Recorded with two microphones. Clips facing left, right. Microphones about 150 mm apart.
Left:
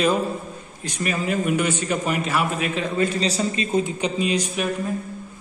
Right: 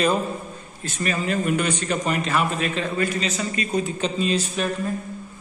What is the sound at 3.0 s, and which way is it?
A man's voice, 30° left (ahead or behind).